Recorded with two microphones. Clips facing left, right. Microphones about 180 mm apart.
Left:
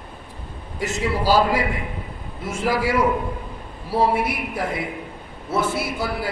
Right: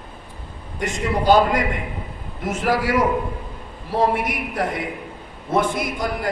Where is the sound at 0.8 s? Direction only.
5° left (ahead or behind).